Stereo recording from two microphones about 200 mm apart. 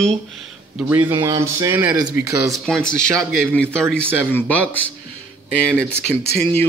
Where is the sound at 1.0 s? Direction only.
15° right (ahead or behind).